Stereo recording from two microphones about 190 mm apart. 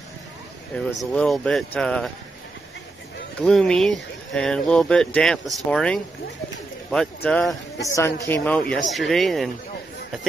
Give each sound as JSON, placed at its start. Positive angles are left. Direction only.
{"t": 0.7, "sound": "speech", "side_deg": 5}
{"t": 3.3, "sound": "speech", "side_deg": 5}
{"t": 7.8, "sound": "a woman's voice", "side_deg": 15}